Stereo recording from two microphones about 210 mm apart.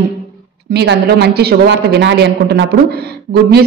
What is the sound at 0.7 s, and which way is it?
A man's voice, 55° right (ahead or behind).